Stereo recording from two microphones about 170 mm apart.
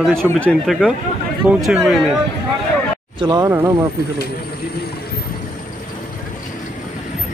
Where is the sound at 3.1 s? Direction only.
25° right (ahead or behind).